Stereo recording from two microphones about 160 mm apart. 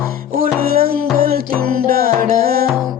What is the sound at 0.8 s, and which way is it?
Music, 70° right (ahead or behind).